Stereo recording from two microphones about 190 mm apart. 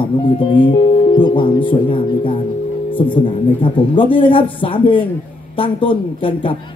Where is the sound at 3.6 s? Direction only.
25° left (ahead or behind).